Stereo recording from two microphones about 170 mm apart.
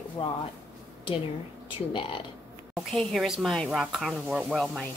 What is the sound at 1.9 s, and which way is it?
Speech, 30° left (ahead or behind).